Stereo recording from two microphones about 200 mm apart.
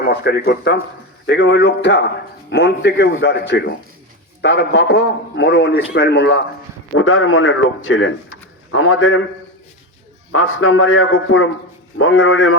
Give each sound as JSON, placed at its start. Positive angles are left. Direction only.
{"t": 0.0, "sound": "a man's voice", "side_deg": 55}
{"t": 6.9, "sound": "a man's voice", "side_deg": 90}
{"t": 10.3, "sound": "a man's voice", "side_deg": 85}
{"t": 11.9, "sound": "a man's voice", "side_deg": 90}